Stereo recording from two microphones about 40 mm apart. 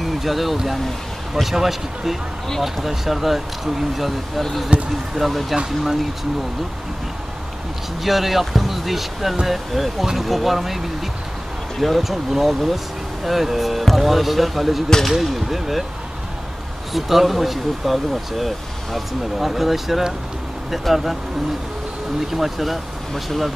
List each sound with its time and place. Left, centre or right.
0.0 s speech: centre
4.7 s speech: right
5.1 s speech: centre
8.0 s speech: centre
11.8 s speech: centre
16.9 s speech: centre
22.3 s speech: centre